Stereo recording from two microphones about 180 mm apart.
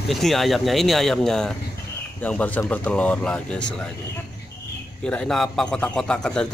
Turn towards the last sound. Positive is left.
turn(degrees=5)  # may be behind; listen again after turning